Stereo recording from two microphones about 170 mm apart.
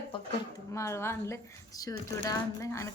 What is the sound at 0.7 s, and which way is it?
A woman's voice, 15° left (ahead or behind).